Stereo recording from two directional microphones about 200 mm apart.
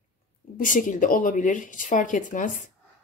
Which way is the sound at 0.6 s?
40° left (ahead or behind).